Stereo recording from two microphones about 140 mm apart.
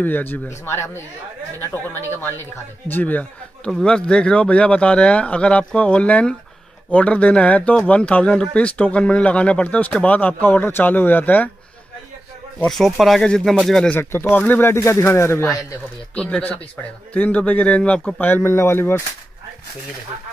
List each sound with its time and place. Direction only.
0.0 s a man's voice: 15° left (ahead or behind)
12.6 s speech: centre (ahead or behind)
13.9 s speech: 15° left (ahead or behind)